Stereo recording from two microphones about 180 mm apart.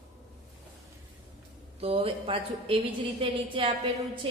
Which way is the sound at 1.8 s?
35° right (ahead or behind).